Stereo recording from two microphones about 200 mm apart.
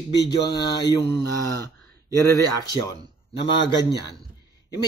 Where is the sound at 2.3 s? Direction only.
15° left (ahead or behind).